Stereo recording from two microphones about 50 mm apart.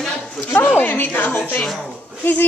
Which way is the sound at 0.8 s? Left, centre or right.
Left.